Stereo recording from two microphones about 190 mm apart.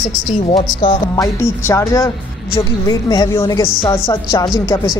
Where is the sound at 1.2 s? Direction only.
15° left (ahead or behind).